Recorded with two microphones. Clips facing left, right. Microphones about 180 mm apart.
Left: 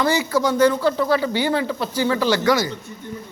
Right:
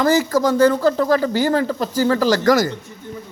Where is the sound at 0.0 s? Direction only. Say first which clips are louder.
Right 3 dB; 40° right (ahead or behind).